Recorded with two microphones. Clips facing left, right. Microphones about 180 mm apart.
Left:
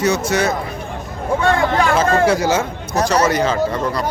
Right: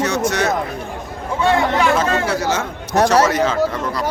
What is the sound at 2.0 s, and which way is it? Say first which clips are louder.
Speech: left 4 dB; 50° left (ahead or behind).